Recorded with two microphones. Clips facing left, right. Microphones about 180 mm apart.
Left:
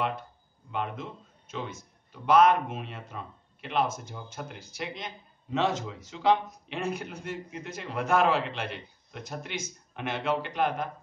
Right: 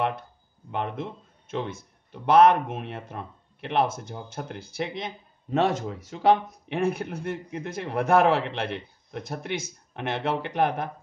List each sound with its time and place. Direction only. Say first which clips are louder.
0.7 s speech: right 3 dB; 60° right (ahead or behind)